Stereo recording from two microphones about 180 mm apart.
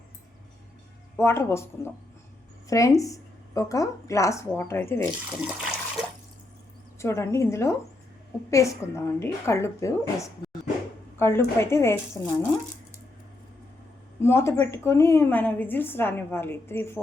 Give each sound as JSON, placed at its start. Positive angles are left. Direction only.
{"t": 1.1, "sound": "a woman's voice", "side_deg": 15}
{"t": 5.4, "sound": "water", "side_deg": 0}
{"t": 7.0, "sound": "a woman's voice", "side_deg": 15}
{"t": 14.2, "sound": "a woman's voice", "side_deg": 15}